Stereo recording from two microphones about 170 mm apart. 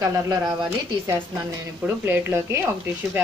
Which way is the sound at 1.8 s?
15° right (ahead or behind).